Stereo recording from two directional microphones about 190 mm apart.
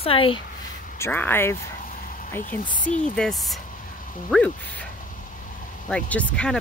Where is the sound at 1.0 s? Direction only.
10° left (ahead or behind).